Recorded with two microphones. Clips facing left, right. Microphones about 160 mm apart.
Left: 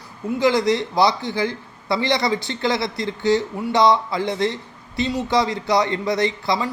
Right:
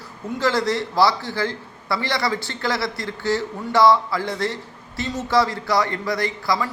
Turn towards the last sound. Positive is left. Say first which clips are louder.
# left 2 dB
turn(degrees=20)  # may be behind; listen again after turning